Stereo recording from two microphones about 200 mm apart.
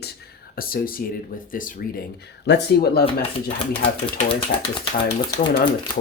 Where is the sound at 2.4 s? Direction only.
60° left (ahead or behind).